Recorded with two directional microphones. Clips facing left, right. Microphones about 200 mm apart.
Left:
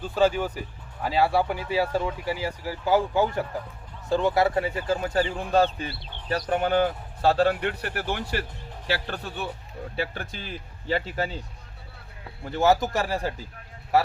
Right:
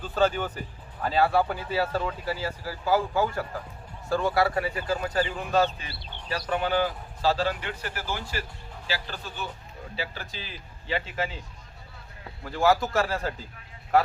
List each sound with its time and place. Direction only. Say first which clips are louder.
0.0 s speech: left 2 dB; 10° left (ahead or behind); by 5.7 s 30° left (ahead or behind)
6.3 s speech: left 3 dB; 45° left (ahead or behind)
12.5 s speech: left 2 dB; 20° left (ahead or behind)